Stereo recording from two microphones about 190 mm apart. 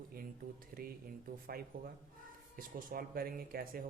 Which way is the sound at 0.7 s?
50° right (ahead or behind).